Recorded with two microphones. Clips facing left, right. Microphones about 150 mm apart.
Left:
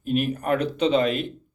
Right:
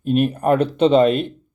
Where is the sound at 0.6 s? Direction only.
55° right (ahead or behind).